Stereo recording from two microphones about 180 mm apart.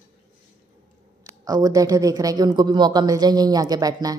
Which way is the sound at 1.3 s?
20° right (ahead or behind).